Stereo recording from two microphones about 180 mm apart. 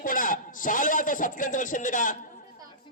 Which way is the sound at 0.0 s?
50° left (ahead or behind).